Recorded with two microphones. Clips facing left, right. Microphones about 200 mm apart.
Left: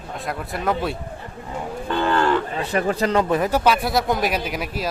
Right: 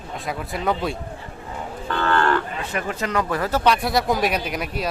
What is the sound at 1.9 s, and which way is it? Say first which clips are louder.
Moo: left 1 dB; 15° left (ahead or behind).